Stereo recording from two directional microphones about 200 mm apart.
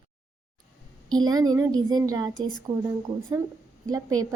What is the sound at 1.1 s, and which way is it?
A woman's voice, 20° right (ahead or behind).